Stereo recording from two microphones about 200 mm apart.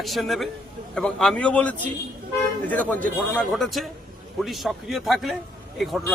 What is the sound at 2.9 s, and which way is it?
A man's voice, 5° left (ahead or behind).